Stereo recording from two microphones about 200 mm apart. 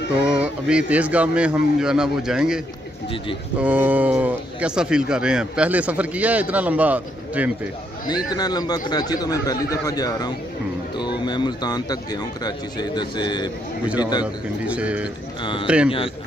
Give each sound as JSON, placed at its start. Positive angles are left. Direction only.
{"t": 0.3, "sound": "speech", "side_deg": -5}
{"t": 8.1, "sound": "speech", "side_deg": 20}
{"t": 14.2, "sound": "speech", "side_deg": -5}